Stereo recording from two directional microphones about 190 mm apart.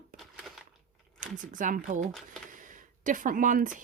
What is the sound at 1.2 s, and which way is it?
Speech, 45° right (ahead or behind).